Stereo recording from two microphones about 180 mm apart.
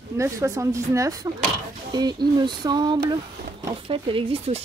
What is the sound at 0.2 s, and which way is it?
Speech, 15° right (ahead or behind).